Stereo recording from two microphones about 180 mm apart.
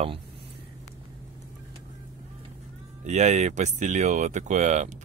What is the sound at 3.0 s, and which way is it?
Speech, 40° right (ahead or behind).